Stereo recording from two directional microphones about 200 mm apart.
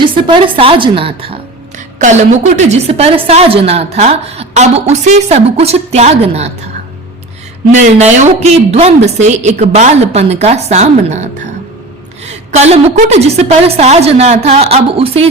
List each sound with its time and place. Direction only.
0.0 s a woman's voice: 25° right (ahead or behind)
7.8 s a woman's voice: 35° right (ahead or behind)